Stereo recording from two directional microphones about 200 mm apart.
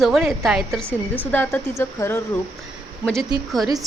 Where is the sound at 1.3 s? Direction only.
10° left (ahead or behind).